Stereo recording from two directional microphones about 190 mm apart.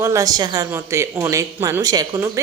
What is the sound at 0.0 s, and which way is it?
Speech, 15° right (ahead or behind).